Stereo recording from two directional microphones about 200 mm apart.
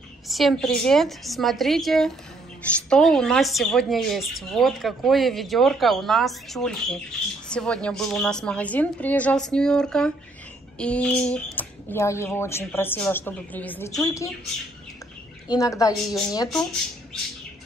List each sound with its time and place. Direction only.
0.3 s speech: centre (ahead or behind); by 14.3 s 15° left (ahead or behind)
15.4 s speech: 15° left (ahead or behind)